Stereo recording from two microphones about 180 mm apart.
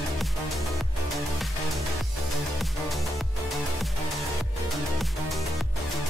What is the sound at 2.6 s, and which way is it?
Music, centre (ahead or behind).